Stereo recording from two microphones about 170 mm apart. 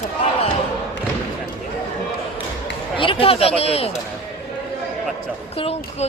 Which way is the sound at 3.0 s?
30° left (ahead or behind).